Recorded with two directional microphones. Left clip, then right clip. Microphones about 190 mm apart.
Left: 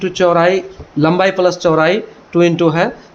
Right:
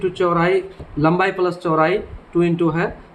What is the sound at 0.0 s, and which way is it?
Speech, 40° left (ahead or behind).